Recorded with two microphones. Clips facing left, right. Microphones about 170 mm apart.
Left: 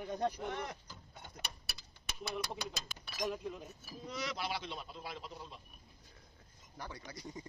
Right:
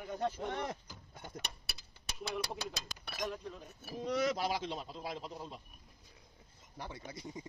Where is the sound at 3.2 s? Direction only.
10° left (ahead or behind).